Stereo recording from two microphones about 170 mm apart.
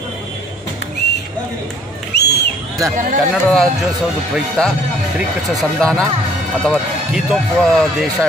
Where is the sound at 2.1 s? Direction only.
80° left.